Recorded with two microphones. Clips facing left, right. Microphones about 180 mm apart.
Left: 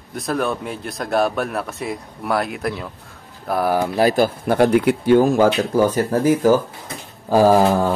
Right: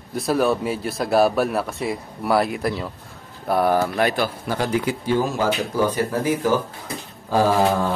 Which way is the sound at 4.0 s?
40° left (ahead or behind).